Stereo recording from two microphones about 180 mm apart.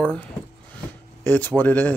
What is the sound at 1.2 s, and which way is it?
Speech, 10° left (ahead or behind).